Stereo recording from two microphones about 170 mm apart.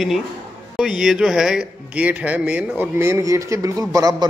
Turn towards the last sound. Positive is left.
turn(degrees=-20)  # may be behind; listen again after turning